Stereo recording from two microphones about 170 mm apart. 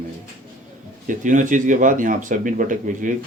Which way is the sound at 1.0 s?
50° right (ahead or behind).